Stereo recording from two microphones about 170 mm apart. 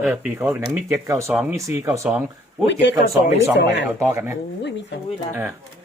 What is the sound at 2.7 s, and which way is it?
Speech, 90° left.